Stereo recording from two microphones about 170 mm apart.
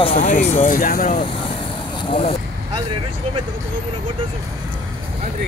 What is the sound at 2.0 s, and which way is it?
Speech, 30° left (ahead or behind).